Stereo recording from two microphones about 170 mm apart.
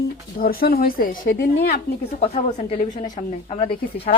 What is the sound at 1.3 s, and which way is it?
Speech, 90° left.